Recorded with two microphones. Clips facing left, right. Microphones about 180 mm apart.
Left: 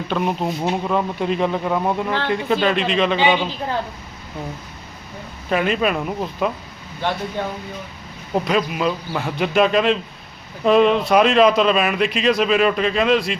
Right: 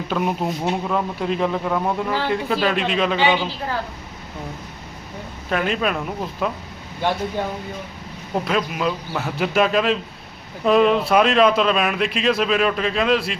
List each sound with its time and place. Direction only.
0.1 s speech: 5° right (ahead or behind)
3.2 s a woman's voice: 15° left (ahead or behind)
5.5 s speech: centre (ahead or behind)
8.4 s speech: centre (ahead or behind)